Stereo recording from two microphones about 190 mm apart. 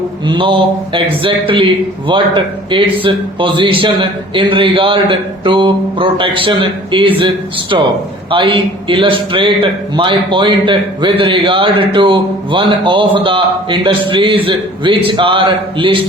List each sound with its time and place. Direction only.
0.3 s a man's voice: 25° right (ahead or behind)